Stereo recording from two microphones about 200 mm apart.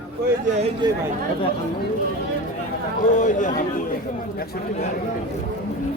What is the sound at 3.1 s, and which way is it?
Speech, 40° left (ahead or behind).